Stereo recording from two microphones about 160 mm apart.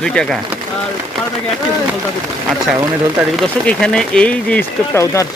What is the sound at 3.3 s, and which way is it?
Speech, 5° left (ahead or behind).